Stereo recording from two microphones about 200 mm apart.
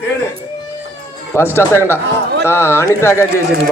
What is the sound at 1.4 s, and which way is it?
Speech, 10° left (ahead or behind).